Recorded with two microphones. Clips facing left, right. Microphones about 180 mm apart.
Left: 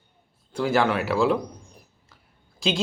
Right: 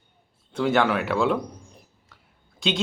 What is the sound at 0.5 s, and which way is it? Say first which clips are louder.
Speech: right 1 dB; centre (ahead or behind).